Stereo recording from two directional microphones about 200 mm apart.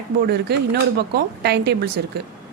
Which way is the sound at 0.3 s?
55° right (ahead or behind).